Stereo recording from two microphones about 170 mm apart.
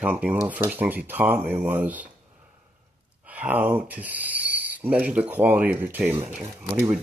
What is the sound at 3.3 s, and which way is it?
Speech, 10° right (ahead or behind).